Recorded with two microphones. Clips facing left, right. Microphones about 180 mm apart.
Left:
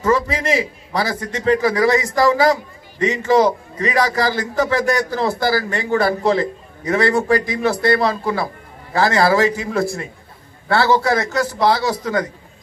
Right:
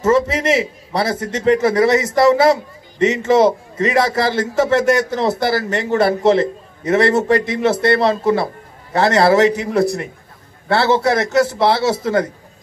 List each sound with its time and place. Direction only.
0.0 s a man's voice: 25° right (ahead or behind)